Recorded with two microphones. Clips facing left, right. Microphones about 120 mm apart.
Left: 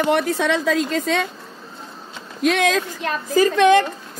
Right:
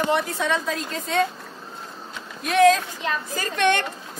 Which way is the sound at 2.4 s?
90° left.